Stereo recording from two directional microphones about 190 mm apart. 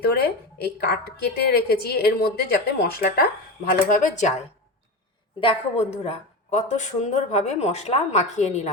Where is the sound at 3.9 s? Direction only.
40° left (ahead or behind).